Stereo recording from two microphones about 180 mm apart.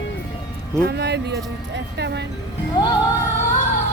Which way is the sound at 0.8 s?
65° right (ahead or behind).